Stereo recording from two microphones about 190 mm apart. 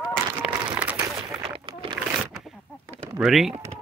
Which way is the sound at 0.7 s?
10° right (ahead or behind).